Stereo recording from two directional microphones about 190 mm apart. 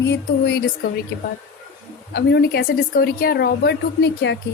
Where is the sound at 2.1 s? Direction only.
60° left (ahead or behind).